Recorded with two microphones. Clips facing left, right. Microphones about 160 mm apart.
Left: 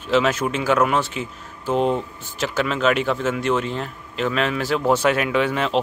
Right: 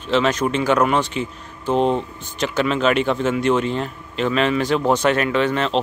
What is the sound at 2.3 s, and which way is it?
Speech, 5° left (ahead or behind).